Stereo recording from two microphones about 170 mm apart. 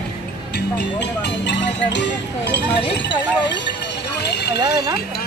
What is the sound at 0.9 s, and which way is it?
Music, 90° left.